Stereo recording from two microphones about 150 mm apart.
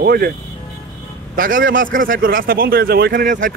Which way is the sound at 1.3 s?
70° right (ahead or behind).